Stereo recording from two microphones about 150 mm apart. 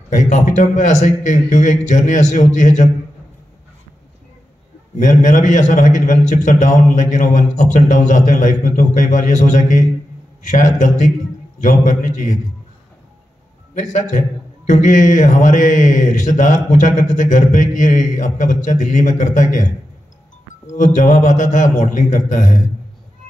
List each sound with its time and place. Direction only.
0.1 s a man's voice: 55° left (ahead or behind)
4.9 s mantra: 55° left (ahead or behind)
13.7 s mantra: 55° left (ahead or behind)
20.7 s mantra: 55° left (ahead or behind)